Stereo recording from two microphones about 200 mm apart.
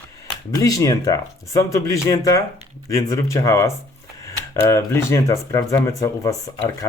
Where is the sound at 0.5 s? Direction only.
15° left (ahead or behind).